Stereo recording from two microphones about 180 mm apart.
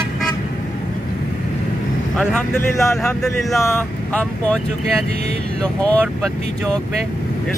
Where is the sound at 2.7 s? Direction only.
15° left (ahead or behind).